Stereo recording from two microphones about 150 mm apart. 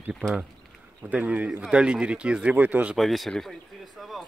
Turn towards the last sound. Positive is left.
turn(degrees=0)  # may be behind; listen again after turning